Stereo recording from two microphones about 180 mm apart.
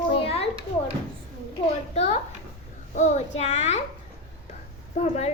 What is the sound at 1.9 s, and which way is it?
A child's voice, 35° left (ahead or behind).